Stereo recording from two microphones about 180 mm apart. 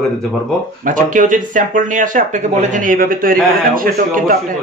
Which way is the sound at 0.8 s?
45° right (ahead or behind).